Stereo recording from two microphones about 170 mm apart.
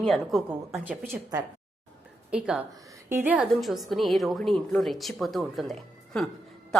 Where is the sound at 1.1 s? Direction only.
15° right (ahead or behind).